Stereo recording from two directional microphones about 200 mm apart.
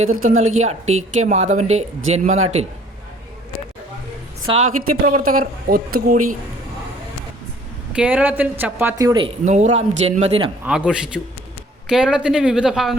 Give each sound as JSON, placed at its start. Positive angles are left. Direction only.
{"t": 0.2, "sound": "a man's voice", "side_deg": -40}
{"t": 4.4, "sound": "a woman's voice", "side_deg": -30}
{"t": 5.0, "sound": "speech", "side_deg": -45}
{"t": 7.9, "sound": "speech", "side_deg": -5}
{"t": 9.4, "sound": "a man's voice", "side_deg": -35}
{"t": 10.7, "sound": "a woman's voice", "side_deg": -5}